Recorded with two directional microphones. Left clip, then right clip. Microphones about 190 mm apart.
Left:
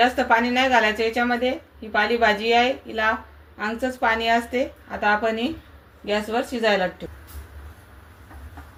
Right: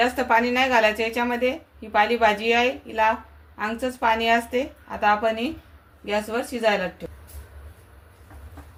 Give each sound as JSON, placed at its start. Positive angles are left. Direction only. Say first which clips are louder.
{"t": 0.0, "sound": "a woman's voice", "louder": "left 2 dB", "side_deg": -40}